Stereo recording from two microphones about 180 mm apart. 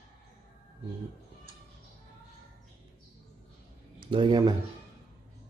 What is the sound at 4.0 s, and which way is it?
Speech, 25° right (ahead or behind).